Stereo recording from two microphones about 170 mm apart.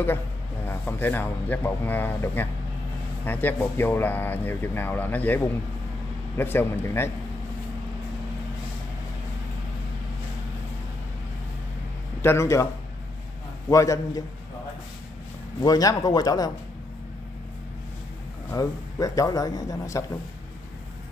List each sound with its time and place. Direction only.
0.7 s speech: 10° left (ahead or behind)
12.2 s speech: 15° left (ahead or behind)
13.7 s a man's voice: 20° left (ahead or behind)
15.6 s a man's voice: 20° left (ahead or behind)
18.5 s a man's voice: 20° left (ahead or behind)